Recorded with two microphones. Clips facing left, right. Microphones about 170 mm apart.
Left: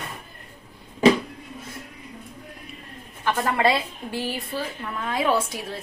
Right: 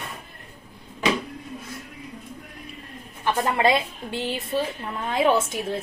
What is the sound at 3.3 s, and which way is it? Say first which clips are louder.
A woman's voice: right 1 dB; 20° right (ahead or behind).